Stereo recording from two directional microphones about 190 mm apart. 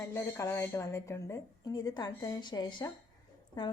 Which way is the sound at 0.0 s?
15° left (ahead or behind).